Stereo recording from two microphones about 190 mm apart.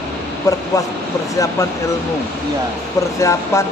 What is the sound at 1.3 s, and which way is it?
Speech, 15° left (ahead or behind).